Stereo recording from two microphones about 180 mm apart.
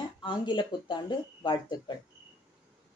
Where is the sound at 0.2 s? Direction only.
25° left (ahead or behind).